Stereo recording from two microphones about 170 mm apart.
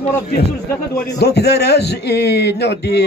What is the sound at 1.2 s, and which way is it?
Speech, 75° left (ahead or behind).